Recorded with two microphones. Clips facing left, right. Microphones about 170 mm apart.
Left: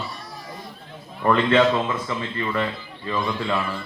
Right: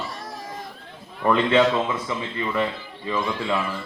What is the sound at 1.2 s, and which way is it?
A man's voice, 10° right (ahead or behind).